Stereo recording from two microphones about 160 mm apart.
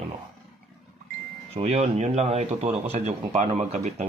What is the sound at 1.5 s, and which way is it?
Speech, 45° right (ahead or behind).